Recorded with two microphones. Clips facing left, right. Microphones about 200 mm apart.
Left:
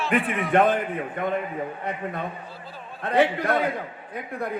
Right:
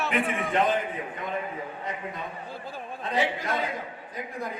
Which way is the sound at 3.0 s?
60° left (ahead or behind).